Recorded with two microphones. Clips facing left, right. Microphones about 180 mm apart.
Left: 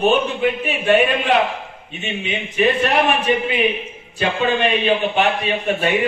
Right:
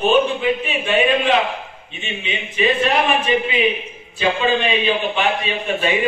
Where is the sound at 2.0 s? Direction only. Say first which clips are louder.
Left 2 dB; 65° left (ahead or behind).